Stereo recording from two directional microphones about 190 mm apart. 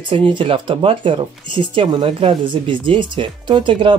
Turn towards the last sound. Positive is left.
turn(degrees=-25)  # may be behind; listen again after turning